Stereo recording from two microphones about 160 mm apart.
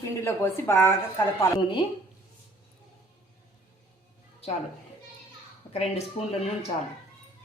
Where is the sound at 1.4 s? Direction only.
25° left (ahead or behind).